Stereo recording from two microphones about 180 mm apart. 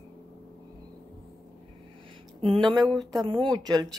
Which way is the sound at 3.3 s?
25° right (ahead or behind).